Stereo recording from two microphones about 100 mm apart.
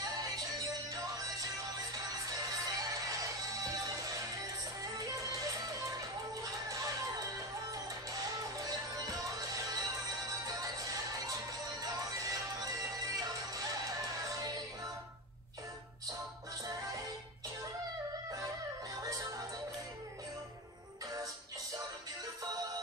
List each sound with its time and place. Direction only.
0.0 s music: 35° right (ahead or behind)